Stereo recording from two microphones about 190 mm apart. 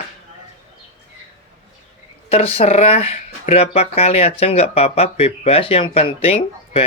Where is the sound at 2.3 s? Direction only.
30° left (ahead or behind).